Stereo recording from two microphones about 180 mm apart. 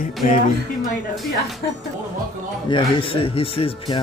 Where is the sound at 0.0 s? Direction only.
45° left (ahead or behind).